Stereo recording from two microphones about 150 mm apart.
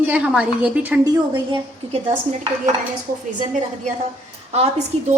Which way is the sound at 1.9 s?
45° right (ahead or behind).